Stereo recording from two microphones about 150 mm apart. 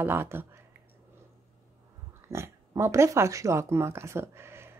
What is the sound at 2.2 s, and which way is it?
Speech, 20° right (ahead or behind).